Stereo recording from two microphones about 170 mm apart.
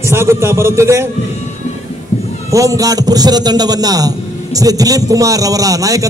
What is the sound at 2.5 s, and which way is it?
A man's voice, 20° right (ahead or behind).